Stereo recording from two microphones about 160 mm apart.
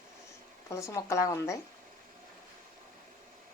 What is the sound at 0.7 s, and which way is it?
Speech, 20° left (ahead or behind).